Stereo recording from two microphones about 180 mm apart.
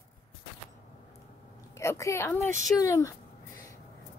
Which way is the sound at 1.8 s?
15° left (ahead or behind).